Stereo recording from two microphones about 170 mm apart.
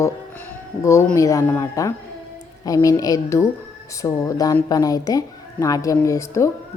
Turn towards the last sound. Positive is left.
turn(degrees=15)  # may be behind; listen again after turning